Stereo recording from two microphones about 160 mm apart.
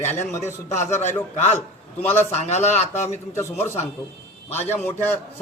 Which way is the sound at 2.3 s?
45° left (ahead or behind).